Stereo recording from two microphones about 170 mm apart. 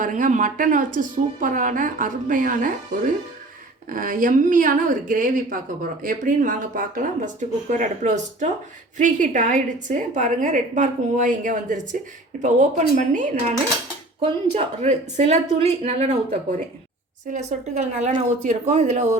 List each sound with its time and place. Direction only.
0.0 s a woman's voice: 50° right (ahead or behind)
3.8 s a woman's voice: 55° right (ahead or behind)
14.2 s a woman's voice: 35° right (ahead or behind)